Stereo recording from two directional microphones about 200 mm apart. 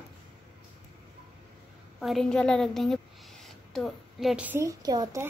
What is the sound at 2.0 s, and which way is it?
A woman's voice, centre (ahead or behind).